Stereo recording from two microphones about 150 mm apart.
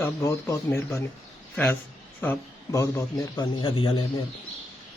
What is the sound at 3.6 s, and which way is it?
Speech, 35° left (ahead or behind).